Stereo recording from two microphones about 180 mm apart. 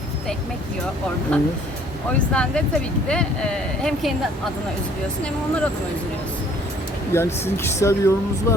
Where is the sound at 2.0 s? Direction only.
5° left (ahead or behind).